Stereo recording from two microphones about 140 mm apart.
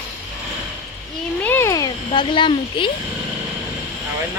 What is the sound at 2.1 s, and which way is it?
Speech, 35° left (ahead or behind).